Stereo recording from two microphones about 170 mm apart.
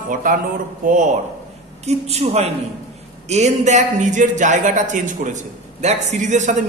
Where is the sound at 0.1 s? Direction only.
55° right (ahead or behind).